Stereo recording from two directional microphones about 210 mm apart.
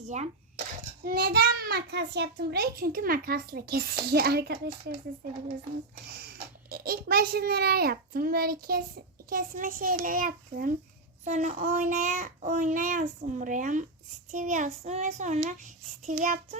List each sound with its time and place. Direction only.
0.0 s speech: 35° right (ahead or behind)
1.0 s a child's voice: 45° right (ahead or behind)
6.1 s a child's voice: 50° right (ahead or behind)